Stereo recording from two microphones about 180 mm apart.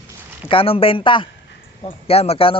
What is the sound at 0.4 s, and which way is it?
Speech, 30° left (ahead or behind).